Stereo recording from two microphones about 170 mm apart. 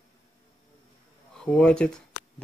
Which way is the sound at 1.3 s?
5° left (ahead or behind).